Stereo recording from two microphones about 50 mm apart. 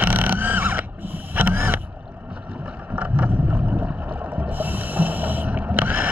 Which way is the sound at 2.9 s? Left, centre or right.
Right.